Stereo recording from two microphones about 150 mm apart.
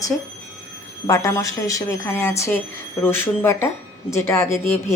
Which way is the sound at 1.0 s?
20° left (ahead or behind).